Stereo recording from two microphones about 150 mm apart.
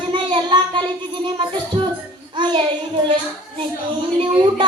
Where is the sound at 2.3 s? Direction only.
30° right (ahead or behind).